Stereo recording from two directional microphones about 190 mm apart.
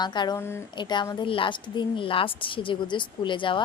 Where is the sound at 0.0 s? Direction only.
20° left (ahead or behind).